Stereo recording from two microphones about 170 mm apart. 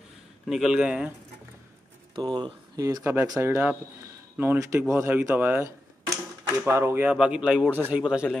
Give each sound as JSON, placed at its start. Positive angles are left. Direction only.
{"t": 0.5, "sound": "speech", "side_deg": -5}
{"t": 2.1, "sound": "speech", "side_deg": -25}